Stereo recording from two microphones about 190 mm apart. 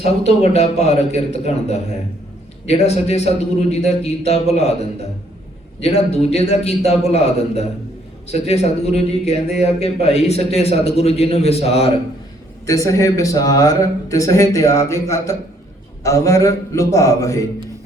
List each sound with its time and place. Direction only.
0.0 s a man's voice: 35° left (ahead or behind)
12.6 s a man's voice: 15° left (ahead or behind)